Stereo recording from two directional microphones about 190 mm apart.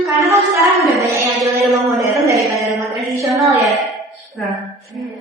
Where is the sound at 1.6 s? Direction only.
Centre (ahead or behind).